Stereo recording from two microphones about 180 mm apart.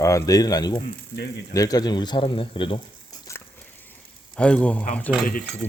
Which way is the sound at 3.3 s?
15° left (ahead or behind).